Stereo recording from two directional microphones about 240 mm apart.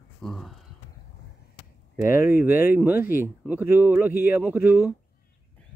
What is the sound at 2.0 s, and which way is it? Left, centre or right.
Speech, centre.